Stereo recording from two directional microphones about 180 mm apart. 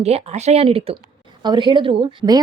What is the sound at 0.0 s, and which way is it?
A woman's voice, 35° right (ahead or behind).